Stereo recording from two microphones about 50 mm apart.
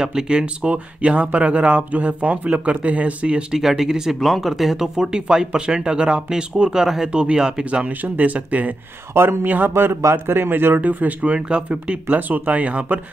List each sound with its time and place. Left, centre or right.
0.0 s speech: centre
3.5 s speech: centre
7.1 s speech: centre
8.0 s speech: right
9.1 s speech: right